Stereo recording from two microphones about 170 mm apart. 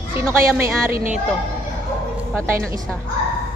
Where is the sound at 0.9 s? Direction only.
50° right (ahead or behind).